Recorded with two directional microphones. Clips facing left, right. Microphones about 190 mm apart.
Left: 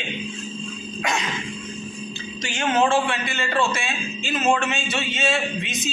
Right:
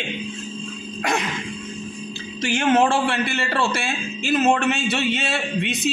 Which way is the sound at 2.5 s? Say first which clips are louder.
Right 3 dB; 60° right (ahead or behind).